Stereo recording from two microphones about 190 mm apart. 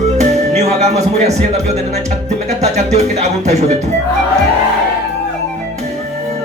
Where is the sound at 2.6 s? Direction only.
35° right (ahead or behind).